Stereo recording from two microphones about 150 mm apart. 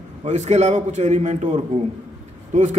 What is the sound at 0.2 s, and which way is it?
A man's voice, 50° right (ahead or behind).